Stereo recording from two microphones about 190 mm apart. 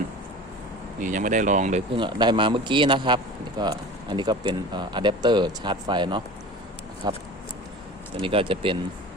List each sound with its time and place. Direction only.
0.9 s speech: 40° right (ahead or behind)
2.0 s speech: 25° right (ahead or behind)
8.2 s speech: 30° right (ahead or behind)